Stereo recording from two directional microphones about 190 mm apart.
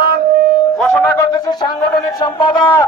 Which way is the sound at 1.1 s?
15° left (ahead or behind).